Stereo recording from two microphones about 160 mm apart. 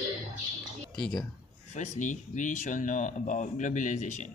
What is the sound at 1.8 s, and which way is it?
Speech, 50° left (ahead or behind).